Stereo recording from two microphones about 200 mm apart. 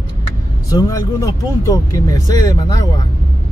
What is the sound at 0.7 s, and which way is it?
Speech, 15° left (ahead or behind).